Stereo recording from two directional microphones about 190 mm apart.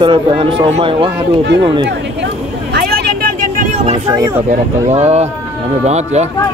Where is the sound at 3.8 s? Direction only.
25° right (ahead or behind).